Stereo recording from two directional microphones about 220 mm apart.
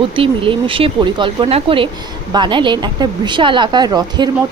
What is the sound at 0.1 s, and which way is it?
Speech, 25° right (ahead or behind).